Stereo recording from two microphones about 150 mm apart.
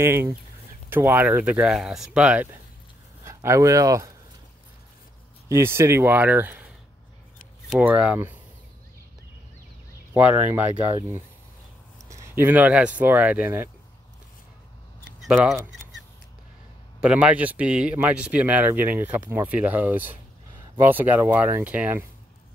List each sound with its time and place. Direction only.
0.0 s speech: 15° right (ahead or behind)
5.5 s speech: 15° right (ahead or behind)
7.7 s speech: 10° right (ahead or behind)
10.1 s speech: 10° right (ahead or behind)
12.1 s speech: 15° right (ahead or behind)
17.0 s speech: 10° right (ahead or behind)